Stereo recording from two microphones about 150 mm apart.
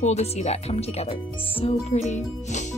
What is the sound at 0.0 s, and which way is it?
Speech, 45° left (ahead or behind).